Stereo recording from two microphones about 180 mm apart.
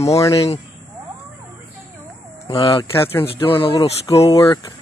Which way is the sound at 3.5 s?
30° left (ahead or behind).